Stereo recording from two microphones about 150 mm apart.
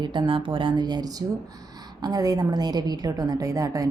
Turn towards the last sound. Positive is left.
turn(degrees=-25)  # may be behind; listen again after turning